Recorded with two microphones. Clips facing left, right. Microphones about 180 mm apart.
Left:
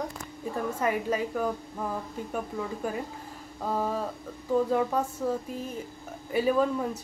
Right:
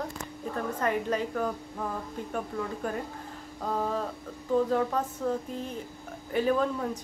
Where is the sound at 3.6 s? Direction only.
10° left (ahead or behind).